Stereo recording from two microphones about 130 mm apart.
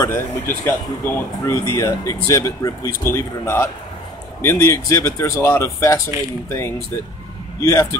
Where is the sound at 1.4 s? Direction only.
25° left (ahead or behind).